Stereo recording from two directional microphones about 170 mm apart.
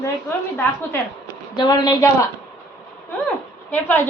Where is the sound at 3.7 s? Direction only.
10° left (ahead or behind).